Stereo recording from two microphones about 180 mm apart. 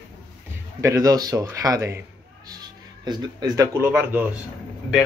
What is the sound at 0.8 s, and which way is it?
Speech, 20° right (ahead or behind).